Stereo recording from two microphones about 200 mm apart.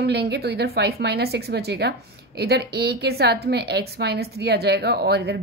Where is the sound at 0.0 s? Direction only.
55° right (ahead or behind).